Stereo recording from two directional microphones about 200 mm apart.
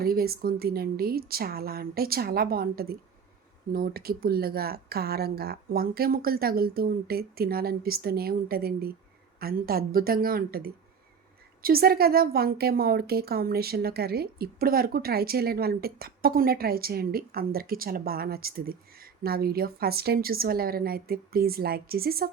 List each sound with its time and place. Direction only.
0.0 s a woman's voice: 50° right (ahead or behind)